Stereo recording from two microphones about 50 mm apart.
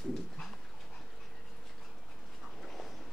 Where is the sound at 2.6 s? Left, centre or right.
Centre.